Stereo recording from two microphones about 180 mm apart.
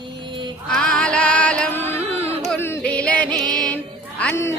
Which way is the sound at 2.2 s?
35° right (ahead or behind).